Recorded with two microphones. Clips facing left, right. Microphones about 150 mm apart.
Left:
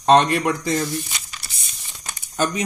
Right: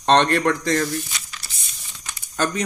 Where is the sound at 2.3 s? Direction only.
10° left (ahead or behind).